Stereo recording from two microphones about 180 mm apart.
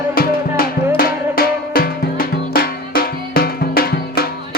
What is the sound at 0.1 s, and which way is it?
Music, 55° left (ahead or behind).